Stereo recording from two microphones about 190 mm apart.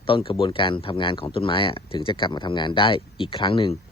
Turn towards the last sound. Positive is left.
turn(degrees=30)  # may be behind; listen again after turning